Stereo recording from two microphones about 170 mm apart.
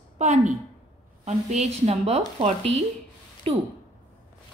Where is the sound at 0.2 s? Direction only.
45° right (ahead or behind).